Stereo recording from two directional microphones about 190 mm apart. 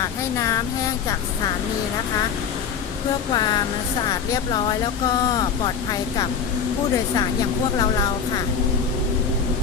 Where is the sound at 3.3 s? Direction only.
20° left (ahead or behind).